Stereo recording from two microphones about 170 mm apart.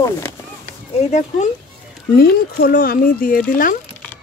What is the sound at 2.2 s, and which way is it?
Speech, 60° left (ahead or behind).